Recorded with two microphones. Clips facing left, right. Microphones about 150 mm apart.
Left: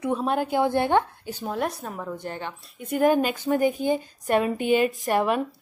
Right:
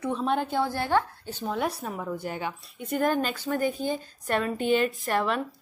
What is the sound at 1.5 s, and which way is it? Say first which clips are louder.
A woman's voice: left 1 dB; centre (ahead or behind).